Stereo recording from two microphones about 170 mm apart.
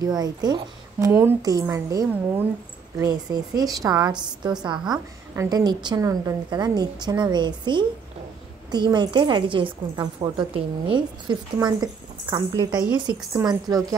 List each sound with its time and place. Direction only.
0.0 s a woman's voice: 25° right (ahead or behind)